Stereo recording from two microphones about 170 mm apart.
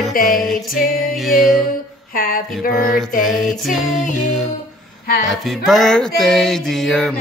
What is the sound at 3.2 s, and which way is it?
Music, centre (ahead or behind).